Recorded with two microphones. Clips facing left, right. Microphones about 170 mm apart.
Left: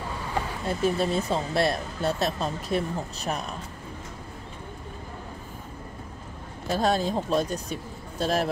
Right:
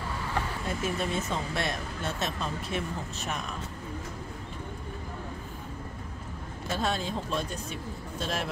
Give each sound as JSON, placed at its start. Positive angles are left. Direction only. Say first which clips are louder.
{"t": 0.7, "sound": "speech", "louder": "left 9 dB", "side_deg": 30}
{"t": 6.7, "sound": "speech", "louder": "left 6 dB", "side_deg": 40}